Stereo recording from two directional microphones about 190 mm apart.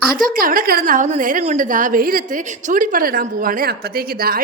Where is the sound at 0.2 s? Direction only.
50° right (ahead or behind).